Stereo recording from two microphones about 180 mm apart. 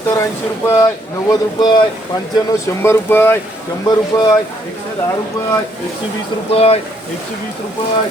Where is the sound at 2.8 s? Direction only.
10° left (ahead or behind).